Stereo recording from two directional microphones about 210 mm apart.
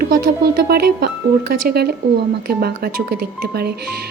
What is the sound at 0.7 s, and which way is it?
A woman's voice, 45° right (ahead or behind).